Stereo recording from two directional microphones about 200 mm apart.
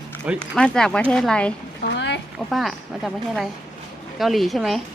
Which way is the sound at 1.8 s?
60° left (ahead or behind).